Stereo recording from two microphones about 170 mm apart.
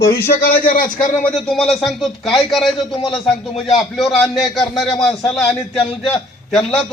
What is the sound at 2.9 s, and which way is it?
Speech, 30° left (ahead or behind).